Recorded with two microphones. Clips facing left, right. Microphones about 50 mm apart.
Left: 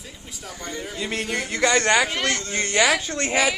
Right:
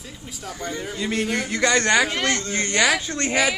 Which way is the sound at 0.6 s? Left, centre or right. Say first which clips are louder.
Right 3 dB; centre.